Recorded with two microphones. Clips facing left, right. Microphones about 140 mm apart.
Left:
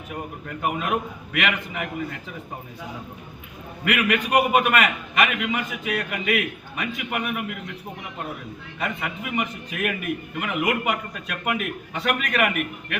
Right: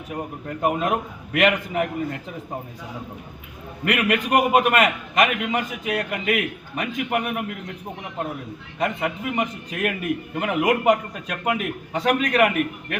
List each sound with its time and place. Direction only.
0.4 s a man's voice: 35° right (ahead or behind)
3.8 s a man's voice: 35° right (ahead or behind)
8.8 s a man's voice: 35° right (ahead or behind)